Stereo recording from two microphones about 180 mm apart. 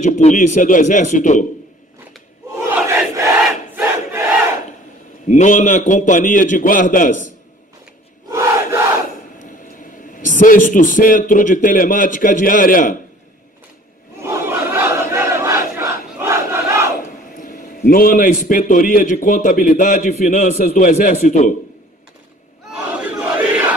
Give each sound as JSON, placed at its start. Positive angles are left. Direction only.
{"t": 0.0, "sound": "a man's voice", "side_deg": 40}
{"t": 2.7, "sound": "crowd", "side_deg": -10}
{"t": 5.3, "sound": "a man's voice", "side_deg": 45}
{"t": 8.3, "sound": "crowd", "side_deg": -15}
{"t": 10.1, "sound": "a man's voice", "side_deg": 50}
{"t": 14.2, "sound": "battle cry", "side_deg": -15}
{"t": 17.4, "sound": "a man's voice", "side_deg": 50}
{"t": 22.8, "sound": "crowd", "side_deg": -10}